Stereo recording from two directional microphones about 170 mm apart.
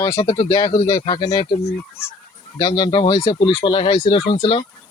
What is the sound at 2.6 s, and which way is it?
Speech, 25° left (ahead or behind).